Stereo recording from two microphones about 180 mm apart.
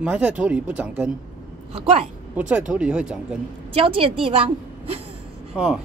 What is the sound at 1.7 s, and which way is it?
Speech, 30° right (ahead or behind).